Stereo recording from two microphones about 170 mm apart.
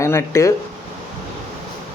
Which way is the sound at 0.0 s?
15° left (ahead or behind).